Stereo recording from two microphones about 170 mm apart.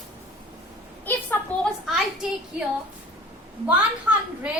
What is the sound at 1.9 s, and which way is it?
Speech, 5° right (ahead or behind).